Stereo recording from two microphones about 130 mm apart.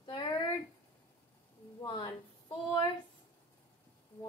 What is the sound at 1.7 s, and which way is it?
Speech, 35° left (ahead or behind).